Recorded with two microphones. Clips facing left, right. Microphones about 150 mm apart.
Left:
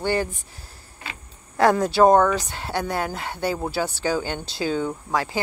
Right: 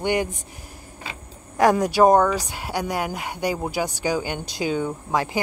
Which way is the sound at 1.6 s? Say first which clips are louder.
Even; 15° right (ahead or behind).